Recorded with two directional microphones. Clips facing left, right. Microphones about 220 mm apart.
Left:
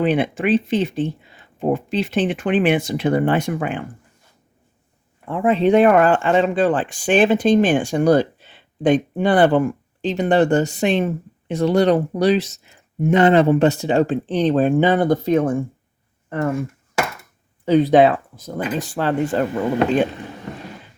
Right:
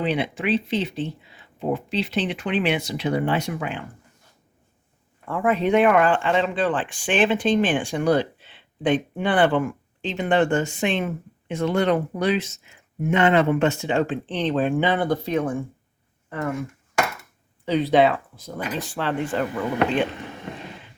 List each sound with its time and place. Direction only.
0.0 s speech: 50° left (ahead or behind)
5.2 s speech: 25° left (ahead or behind); by 15.5 s 45° left (ahead or behind)
17.7 s speech: 45° left (ahead or behind)